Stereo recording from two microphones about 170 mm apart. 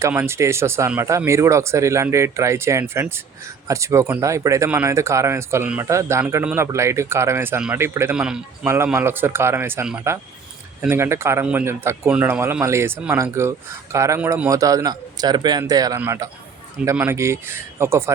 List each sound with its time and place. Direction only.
0.0 s a man's voice: 15° right (ahead or behind)